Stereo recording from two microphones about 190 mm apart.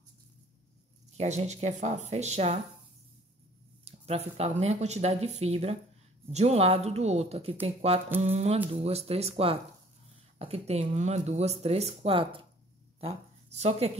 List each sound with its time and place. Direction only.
1.1 s speech: 35° right (ahead or behind)
3.8 s speech: 35° right (ahead or behind)
13.6 s speech: 35° right (ahead or behind)